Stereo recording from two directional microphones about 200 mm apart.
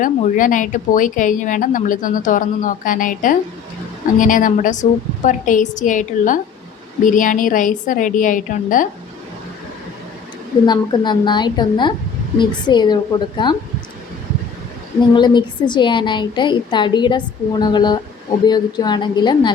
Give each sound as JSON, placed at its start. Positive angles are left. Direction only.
{"t": 0.0, "sound": "speech", "side_deg": 40}
{"t": 10.7, "sound": "a woman's voice", "side_deg": 20}
{"t": 15.1, "sound": "a woman's voice", "side_deg": 20}